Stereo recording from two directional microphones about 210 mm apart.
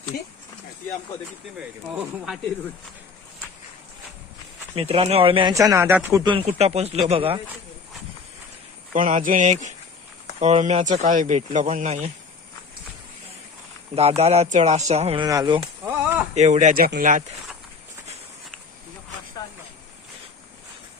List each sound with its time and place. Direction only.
0.1 s speech: 45° left (ahead or behind)
4.7 s speech: 25° right (ahead or behind)
8.9 s speech: 40° right (ahead or behind)
13.9 s speech: 30° right (ahead or behind)
16.3 s speech: 35° right (ahead or behind)